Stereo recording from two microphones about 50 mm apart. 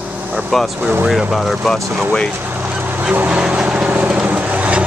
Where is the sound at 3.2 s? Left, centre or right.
Right.